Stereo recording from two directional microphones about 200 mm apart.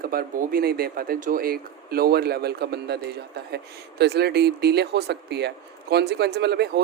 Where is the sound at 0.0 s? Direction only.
45° right (ahead or behind).